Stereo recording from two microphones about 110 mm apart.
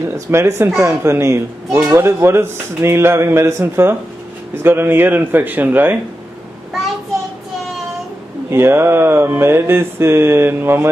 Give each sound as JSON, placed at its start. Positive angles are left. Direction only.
{"t": 0.0, "sound": "a man's voice", "side_deg": -25}
{"t": 8.5, "sound": "speech", "side_deg": -20}